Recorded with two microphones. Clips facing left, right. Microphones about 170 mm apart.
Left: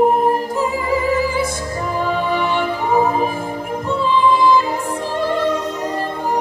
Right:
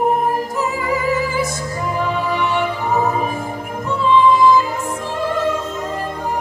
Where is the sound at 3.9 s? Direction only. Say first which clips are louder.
Right 2 dB; 30° left (ahead or behind).